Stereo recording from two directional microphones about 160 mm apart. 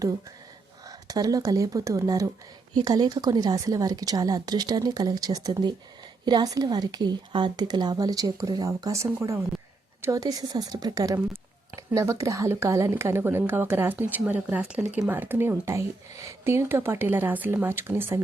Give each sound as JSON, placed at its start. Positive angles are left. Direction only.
{"t": 0.9, "sound": "a woman's voice", "side_deg": -25}